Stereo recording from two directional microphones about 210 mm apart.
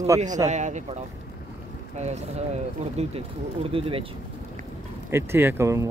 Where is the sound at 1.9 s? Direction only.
30° right (ahead or behind).